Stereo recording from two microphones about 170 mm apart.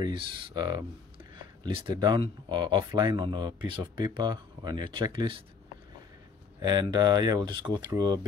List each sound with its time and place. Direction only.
0.0 s speech: 25° right (ahead or behind)
6.6 s speech: 25° right (ahead or behind)